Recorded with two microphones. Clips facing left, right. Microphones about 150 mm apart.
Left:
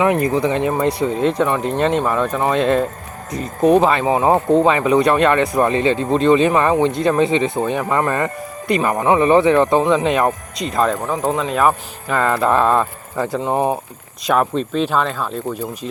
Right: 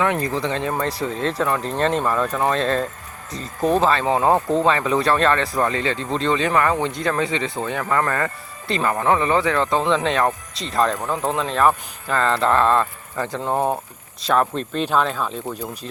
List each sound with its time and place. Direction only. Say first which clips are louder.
0.0 s speech: left 5 dB; 20° left (ahead or behind)
0.3 s speech: left 6 dB; 5° left (ahead or behind)